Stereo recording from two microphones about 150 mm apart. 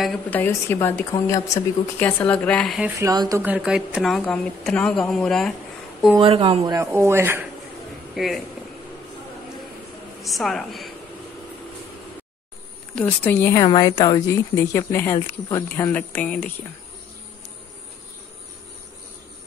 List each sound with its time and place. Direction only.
0.3 s a woman's voice: 15° left (ahead or behind)
3.1 s speech: 25° right (ahead or behind)
3.4 s speech: 5° right (ahead or behind)
6.2 s speech: 40° right (ahead or behind)
6.7 s speech: 20° right (ahead or behind)
8.1 s speech: centre (ahead or behind)
10.2 s speech: centre (ahead or behind)
12.9 s a woman's voice: 10° left (ahead or behind)
13.7 s a woman's voice: 25° left (ahead or behind); by 16.5 s 10° left (ahead or behind)